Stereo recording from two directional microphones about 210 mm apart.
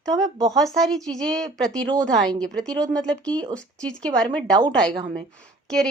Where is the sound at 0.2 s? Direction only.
20° right (ahead or behind).